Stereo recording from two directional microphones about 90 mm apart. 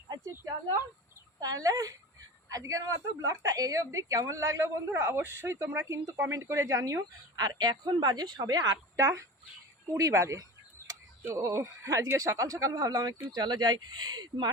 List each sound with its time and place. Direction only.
1.4 s a woman's voice: 40° right (ahead or behind)
9.0 s a woman's voice: 35° right (ahead or behind); by 14.5 s 50° right (ahead or behind)